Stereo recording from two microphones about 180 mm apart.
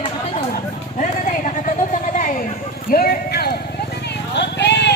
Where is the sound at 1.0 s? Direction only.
45° left (ahead or behind); by 4.9 s 75° left (ahead or behind).